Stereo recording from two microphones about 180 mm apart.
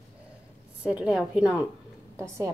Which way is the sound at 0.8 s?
5° right (ahead or behind).